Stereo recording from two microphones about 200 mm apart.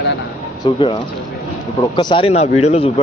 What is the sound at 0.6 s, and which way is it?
Speech, 25° left (ahead or behind).